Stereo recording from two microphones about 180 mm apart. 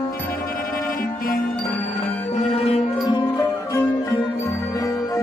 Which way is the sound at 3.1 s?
20° left (ahead or behind).